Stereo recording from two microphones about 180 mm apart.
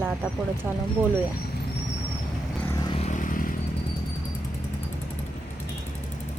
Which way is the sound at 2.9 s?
40° left (ahead or behind).